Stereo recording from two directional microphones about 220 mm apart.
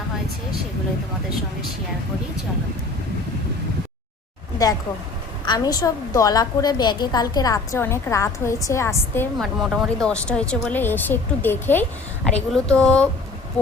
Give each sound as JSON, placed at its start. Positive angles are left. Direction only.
{"t": 5.5, "sound": "a woman's voice", "side_deg": 15}
{"t": 9.4, "sound": "speech", "side_deg": 0}